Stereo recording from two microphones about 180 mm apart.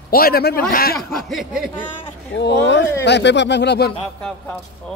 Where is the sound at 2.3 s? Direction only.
75° left (ahead or behind).